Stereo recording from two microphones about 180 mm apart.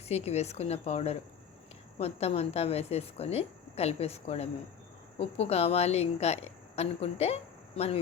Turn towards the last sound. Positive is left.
turn(degrees=35)  # may be behind; listen again after turning